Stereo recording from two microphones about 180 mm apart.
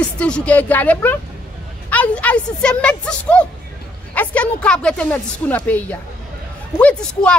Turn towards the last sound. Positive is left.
turn(degrees=5)  # may be behind; listen again after turning